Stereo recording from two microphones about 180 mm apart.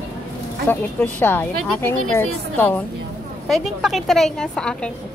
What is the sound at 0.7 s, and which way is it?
A woman's voice, 10° left (ahead or behind).